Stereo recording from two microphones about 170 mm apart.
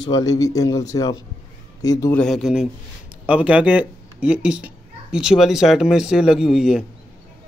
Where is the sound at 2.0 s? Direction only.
10° left (ahead or behind).